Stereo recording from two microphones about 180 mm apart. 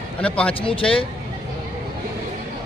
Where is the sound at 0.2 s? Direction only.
5° left (ahead or behind).